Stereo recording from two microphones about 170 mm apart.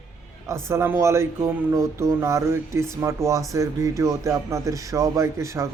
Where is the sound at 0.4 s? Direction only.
15° right (ahead or behind).